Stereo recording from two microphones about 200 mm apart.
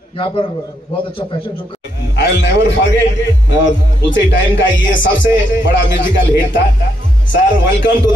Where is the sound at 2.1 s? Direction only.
65° left (ahead or behind).